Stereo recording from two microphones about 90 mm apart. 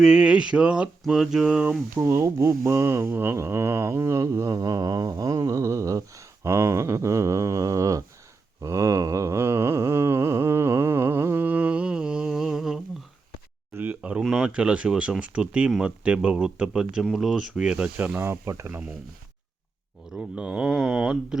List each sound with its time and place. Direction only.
0.0 s speech: 5° right (ahead or behind)
2.0 s mantra: 35° right (ahead or behind)
8.6 s a sound: 35° right (ahead or behind); by 12.8 s 5° right (ahead or behind)
13.7 s speech: 20° right (ahead or behind)
18.2 s mantra: 30° right (ahead or behind)
18.7 s speech: 15° right (ahead or behind)
20.1 s speech: 15° right (ahead or behind)